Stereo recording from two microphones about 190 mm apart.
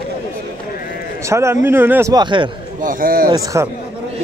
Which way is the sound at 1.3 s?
15° right (ahead or behind).